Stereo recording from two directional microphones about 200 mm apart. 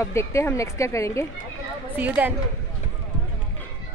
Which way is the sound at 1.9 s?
10° right (ahead or behind).